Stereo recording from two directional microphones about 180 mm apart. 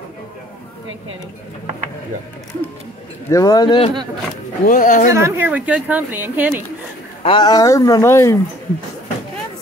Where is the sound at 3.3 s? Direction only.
20° left (ahead or behind).